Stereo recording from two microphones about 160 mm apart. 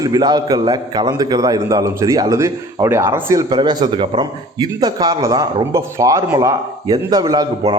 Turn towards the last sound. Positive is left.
turn(degrees=-25)  # may be behind; listen again after turning